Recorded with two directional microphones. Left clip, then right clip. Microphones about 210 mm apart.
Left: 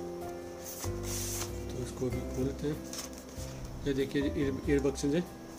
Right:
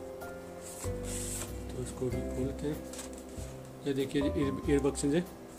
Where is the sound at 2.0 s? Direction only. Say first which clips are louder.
Even; 5° left (ahead or behind).